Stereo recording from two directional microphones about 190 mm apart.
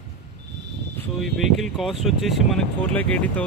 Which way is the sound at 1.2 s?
Centre (ahead or behind).